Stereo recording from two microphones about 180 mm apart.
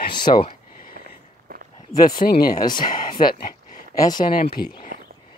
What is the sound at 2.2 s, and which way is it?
Speech, 55° left (ahead or behind).